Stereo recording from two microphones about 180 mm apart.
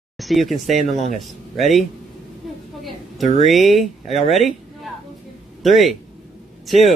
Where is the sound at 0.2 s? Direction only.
Centre (ahead or behind).